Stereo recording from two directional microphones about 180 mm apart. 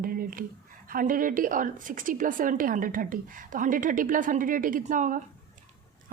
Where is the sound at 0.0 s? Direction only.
55° right (ahead or behind).